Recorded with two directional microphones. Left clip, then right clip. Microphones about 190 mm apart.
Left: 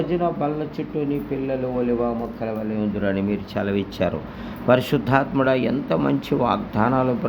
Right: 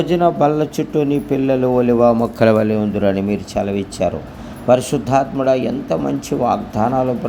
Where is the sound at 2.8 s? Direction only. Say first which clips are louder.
Right 7 dB; 20° right (ahead or behind).